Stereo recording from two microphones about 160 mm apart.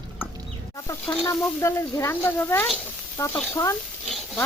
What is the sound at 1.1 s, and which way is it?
Speech, 20° left (ahead or behind).